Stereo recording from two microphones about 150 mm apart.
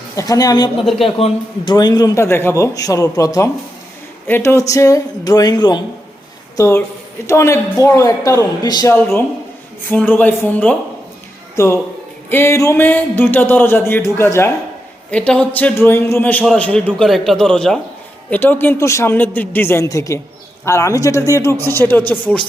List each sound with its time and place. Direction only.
0.2 s a man's voice: 25° left (ahead or behind)
6.6 s a man's voice: 20° left (ahead or behind)
9.9 s speech: 10° left (ahead or behind)
15.1 s a man's voice: 5° left (ahead or behind)